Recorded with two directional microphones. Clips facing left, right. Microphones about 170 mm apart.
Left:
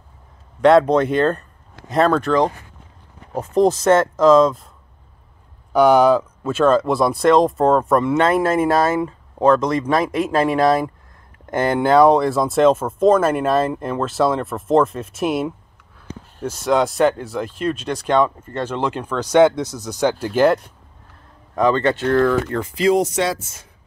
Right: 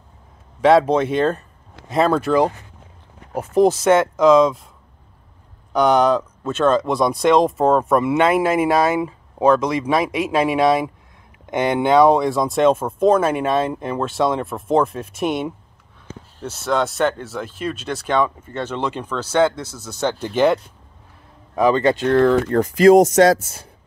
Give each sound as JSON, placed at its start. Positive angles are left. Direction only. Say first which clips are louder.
{"t": 0.6, "sound": "speech", "louder": "left 1 dB", "side_deg": 0}
{"t": 5.7, "sound": "speech", "louder": "left 3 dB", "side_deg": 5}
{"t": 16.5, "sound": "speech", "louder": "left 3 dB", "side_deg": 0}
{"t": 18.6, "sound": "speech", "louder": "left 2 dB", "side_deg": 10}
{"t": 21.5, "sound": "speech", "louder": "right 1 dB", "side_deg": -10}
{"t": 22.0, "sound": "speech", "louder": "right 2 dB", "side_deg": -30}
{"t": 22.6, "sound": "speech", "louder": "right 9 dB", "side_deg": -45}